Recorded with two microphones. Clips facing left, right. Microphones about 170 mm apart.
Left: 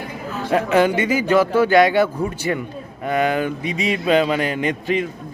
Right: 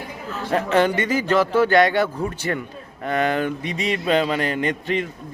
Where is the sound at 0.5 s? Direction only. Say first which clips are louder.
Left 2 dB; 10° left (ahead or behind).